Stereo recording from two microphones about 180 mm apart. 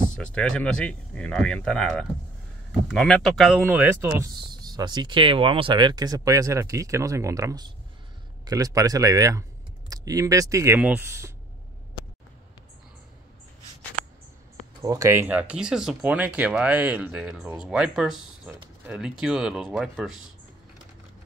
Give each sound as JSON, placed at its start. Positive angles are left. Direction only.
{"t": 0.1, "sound": "speech", "side_deg": 5}
{"t": 4.3, "sound": "speech", "side_deg": -25}
{"t": 14.8, "sound": "speech", "side_deg": -20}